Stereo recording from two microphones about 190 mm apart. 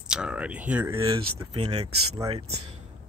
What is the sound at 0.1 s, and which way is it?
Speech, 5° right (ahead or behind).